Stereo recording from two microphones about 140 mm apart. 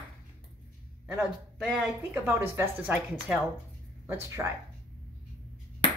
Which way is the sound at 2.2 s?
20° right (ahead or behind).